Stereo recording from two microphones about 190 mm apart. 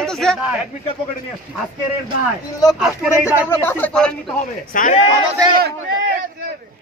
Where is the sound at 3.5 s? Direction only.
10° left (ahead or behind).